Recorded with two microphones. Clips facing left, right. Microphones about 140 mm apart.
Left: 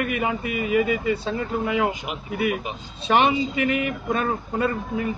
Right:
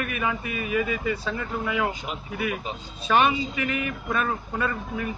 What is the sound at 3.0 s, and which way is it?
Speech, 25° left (ahead or behind).